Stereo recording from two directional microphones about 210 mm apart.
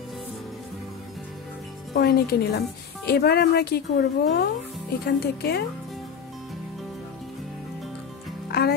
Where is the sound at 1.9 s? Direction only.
50° left (ahead or behind).